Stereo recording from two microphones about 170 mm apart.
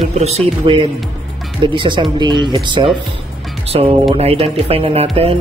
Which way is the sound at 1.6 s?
30° right (ahead or behind).